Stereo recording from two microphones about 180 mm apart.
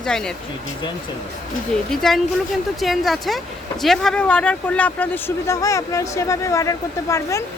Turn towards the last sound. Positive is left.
turn(degrees=15)  # may be behind; listen again after turning